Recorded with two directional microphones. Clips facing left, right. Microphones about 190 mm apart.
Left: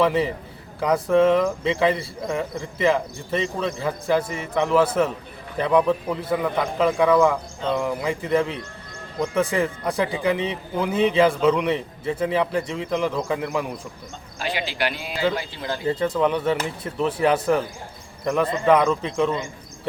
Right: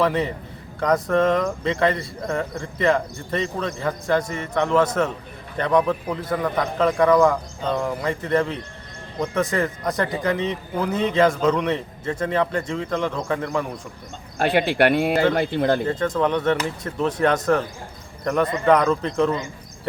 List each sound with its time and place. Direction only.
0.0 s speech: 5° left (ahead or behind)
14.3 s speech: 55° right (ahead or behind)
15.9 s speech: 10° left (ahead or behind)
18.6 s speech: 5° left (ahead or behind)